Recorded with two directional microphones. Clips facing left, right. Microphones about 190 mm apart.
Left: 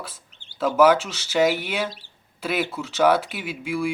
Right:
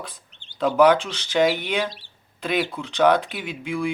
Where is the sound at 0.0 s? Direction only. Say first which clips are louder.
Even; 5° left (ahead or behind).